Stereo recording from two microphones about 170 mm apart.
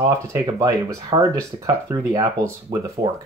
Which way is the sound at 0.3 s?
20° right (ahead or behind).